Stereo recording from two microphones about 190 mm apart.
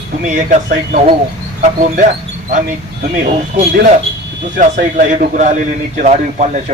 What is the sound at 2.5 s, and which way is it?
A man's voice, 45° right (ahead or behind).